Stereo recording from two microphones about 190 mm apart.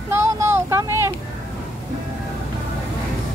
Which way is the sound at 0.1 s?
15° right (ahead or behind).